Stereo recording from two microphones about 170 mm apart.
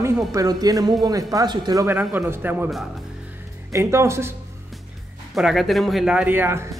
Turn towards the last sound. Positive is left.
turn(degrees=-15)  # may be behind; listen again after turning